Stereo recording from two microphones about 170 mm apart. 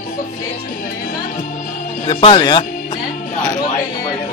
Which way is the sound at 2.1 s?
30° left (ahead or behind).